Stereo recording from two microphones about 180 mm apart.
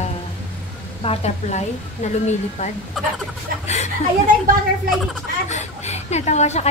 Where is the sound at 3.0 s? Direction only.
Centre (ahead or behind).